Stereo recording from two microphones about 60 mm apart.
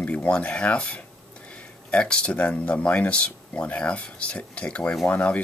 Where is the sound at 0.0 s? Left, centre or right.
Left.